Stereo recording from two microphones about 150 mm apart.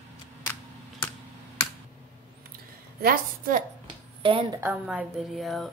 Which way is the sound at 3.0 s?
75° right (ahead or behind).